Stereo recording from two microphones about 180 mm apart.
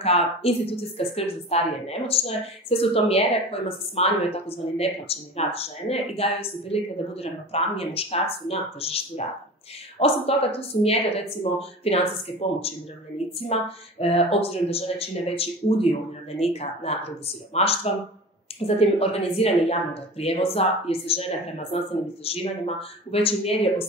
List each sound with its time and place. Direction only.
0.0 s a woman's voice: 35° left (ahead or behind)
18.8 s a woman's voice: 35° left (ahead or behind)